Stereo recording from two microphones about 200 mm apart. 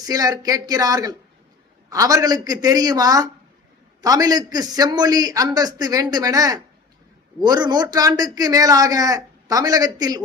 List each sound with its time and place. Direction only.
0.0 s a man's voice: 20° right (ahead or behind)